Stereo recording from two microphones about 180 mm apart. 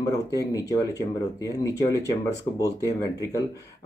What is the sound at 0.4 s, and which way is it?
Speech, 20° left (ahead or behind).